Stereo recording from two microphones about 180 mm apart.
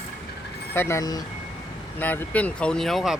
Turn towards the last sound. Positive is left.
turn(degrees=0)  # may be behind; listen again after turning